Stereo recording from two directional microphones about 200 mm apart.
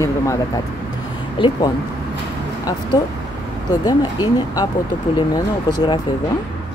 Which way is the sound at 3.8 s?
20° left (ahead or behind).